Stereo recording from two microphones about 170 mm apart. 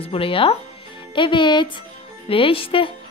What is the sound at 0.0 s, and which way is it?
A woman's voice, 35° left (ahead or behind).